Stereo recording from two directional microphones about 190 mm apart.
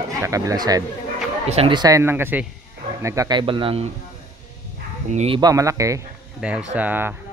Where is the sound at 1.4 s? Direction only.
30° right (ahead or behind).